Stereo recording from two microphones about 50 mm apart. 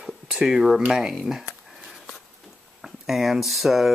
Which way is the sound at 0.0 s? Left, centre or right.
Centre.